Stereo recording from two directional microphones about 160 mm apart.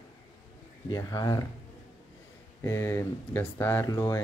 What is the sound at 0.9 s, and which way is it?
Speech, 25° left (ahead or behind).